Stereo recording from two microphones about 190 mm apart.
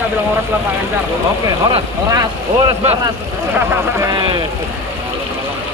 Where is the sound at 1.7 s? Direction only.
20° right (ahead or behind).